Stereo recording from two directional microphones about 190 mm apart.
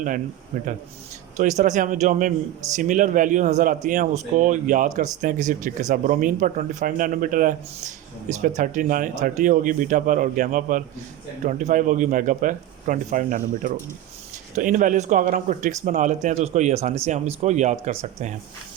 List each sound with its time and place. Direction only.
0.5 s speech: 45° right (ahead or behind)